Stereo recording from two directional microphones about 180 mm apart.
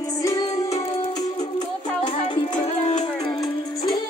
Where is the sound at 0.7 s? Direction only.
35° left (ahead or behind).